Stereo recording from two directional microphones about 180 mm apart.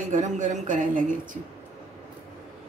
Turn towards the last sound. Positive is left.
turn(degrees=-45)  # may be behind; listen again after turning